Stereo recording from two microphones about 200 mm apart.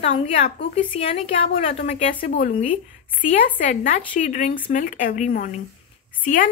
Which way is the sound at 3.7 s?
40° left (ahead or behind).